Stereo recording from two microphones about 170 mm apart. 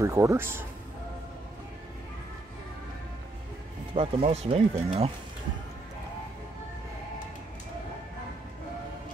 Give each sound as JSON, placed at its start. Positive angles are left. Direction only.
{"t": 0.0, "sound": "speech", "side_deg": -15}
{"t": 3.9, "sound": "speech", "side_deg": -35}